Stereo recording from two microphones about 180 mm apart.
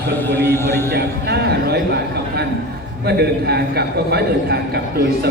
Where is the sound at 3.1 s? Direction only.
65° right (ahead or behind).